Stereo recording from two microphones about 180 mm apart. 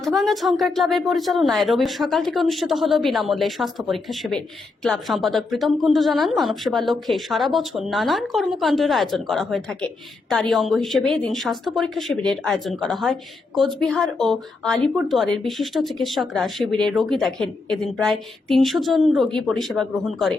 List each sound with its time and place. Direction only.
0.0 s speech: centre (ahead or behind)